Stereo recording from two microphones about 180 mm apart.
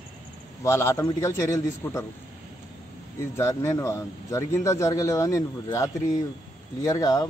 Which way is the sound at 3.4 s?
15° left (ahead or behind).